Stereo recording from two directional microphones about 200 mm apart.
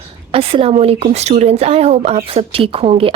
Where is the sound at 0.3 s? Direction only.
30° right (ahead or behind).